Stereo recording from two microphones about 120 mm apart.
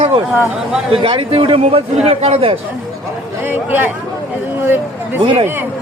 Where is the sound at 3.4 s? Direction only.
15° right (ahead or behind).